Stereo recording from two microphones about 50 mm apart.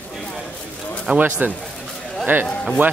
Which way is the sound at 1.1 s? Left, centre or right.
Right.